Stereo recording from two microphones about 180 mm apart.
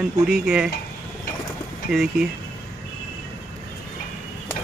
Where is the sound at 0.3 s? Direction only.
5° right (ahead or behind).